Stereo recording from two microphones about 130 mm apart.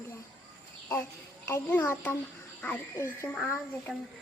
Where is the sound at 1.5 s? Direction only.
15° left (ahead or behind).